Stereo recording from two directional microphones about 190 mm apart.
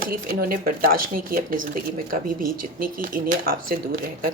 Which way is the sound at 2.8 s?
50° right (ahead or behind).